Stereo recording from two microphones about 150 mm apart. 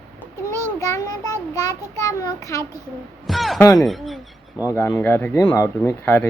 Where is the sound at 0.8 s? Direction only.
25° left (ahead or behind).